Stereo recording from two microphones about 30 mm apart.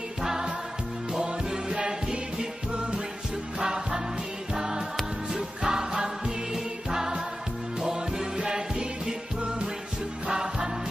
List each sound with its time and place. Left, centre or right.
0.2 s music: centre; by 3.0 s right
3.5 s music: right
10.2 s music: right